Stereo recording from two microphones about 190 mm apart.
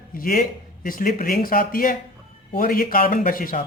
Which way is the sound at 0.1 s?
50° left (ahead or behind).